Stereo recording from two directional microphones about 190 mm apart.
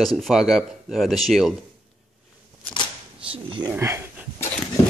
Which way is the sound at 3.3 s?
25° right (ahead or behind).